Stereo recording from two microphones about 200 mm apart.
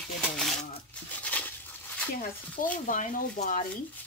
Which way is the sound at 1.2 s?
10° left (ahead or behind).